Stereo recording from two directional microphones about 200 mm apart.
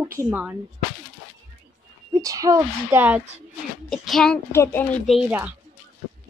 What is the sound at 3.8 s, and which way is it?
A woman's voice, centre (ahead or behind).